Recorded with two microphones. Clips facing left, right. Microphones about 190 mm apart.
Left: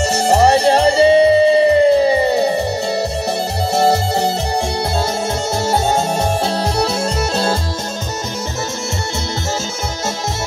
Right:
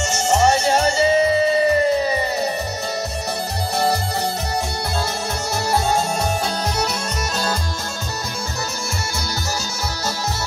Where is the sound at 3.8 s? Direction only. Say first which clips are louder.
Left 6 dB; 25° left (ahead or behind).